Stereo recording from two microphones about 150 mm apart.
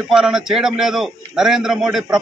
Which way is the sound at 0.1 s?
5° right (ahead or behind).